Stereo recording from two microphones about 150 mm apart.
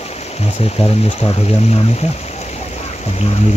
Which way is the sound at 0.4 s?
45° left (ahead or behind).